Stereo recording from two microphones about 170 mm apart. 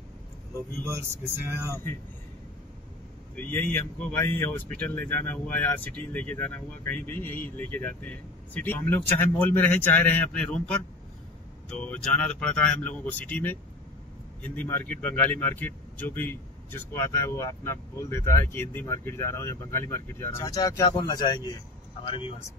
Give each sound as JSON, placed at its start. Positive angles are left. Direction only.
{"t": 1.5, "sound": "speech", "side_deg": -15}
{"t": 3.3, "sound": "speech", "side_deg": 10}